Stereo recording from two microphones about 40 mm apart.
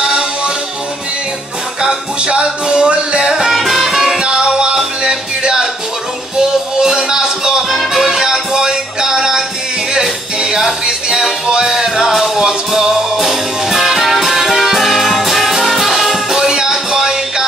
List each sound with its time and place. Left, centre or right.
1.8 s music: centre
3.5 s music: centre
4.2 s music: right
10.4 s music: centre